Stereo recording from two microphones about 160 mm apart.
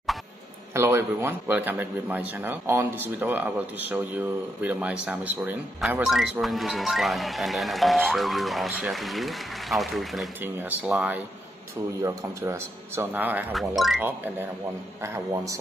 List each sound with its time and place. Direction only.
0.7 s speech: 15° right (ahead or behind)
13.5 s speech: centre (ahead or behind)
14.0 s speech: 10° right (ahead or behind)